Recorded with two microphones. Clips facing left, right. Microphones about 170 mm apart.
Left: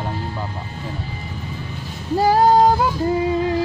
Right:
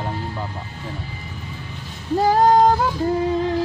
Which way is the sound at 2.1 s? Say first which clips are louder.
Left 1 dB; 5° left (ahead or behind).